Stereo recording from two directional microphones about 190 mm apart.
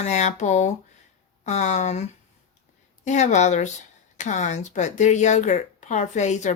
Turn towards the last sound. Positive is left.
turn(degrees=40)  # may be behind; listen again after turning